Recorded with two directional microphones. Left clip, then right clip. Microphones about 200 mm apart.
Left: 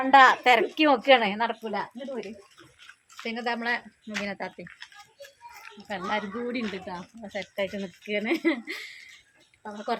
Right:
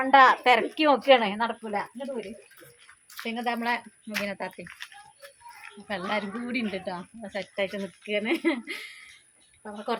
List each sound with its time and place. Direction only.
0.0 s speech: 5° left (ahead or behind)
3.2 s speech: 5° left (ahead or behind)
4.8 s speech: 40° right (ahead or behind)
7.5 s speech: 20° right (ahead or behind)
7.8 s speech: centre (ahead or behind)